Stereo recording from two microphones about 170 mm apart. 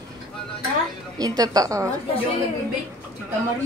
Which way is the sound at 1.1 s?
20° right (ahead or behind).